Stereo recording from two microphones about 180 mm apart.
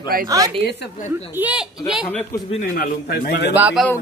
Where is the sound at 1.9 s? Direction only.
Centre (ahead or behind).